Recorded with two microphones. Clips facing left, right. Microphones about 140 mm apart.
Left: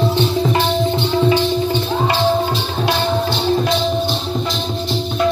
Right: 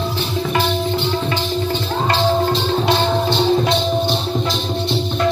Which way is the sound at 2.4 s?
Centre (ahead or behind).